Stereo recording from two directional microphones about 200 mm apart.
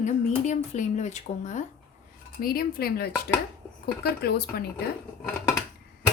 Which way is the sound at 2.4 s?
45° left (ahead or behind).